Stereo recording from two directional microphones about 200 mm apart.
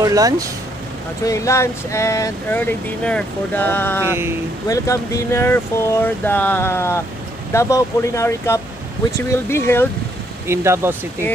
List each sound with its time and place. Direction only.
0.0 s speech: 15° right (ahead or behind)
1.2 s speech: 15° left (ahead or behind)
4.0 s speech: 10° right (ahead or behind)
4.6 s speech: 15° left (ahead or behind)
10.4 s speech: 15° right (ahead or behind)